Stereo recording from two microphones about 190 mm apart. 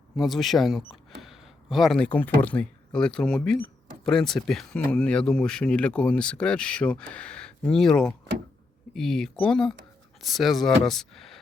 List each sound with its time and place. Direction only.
0.2 s speech: centre (ahead or behind)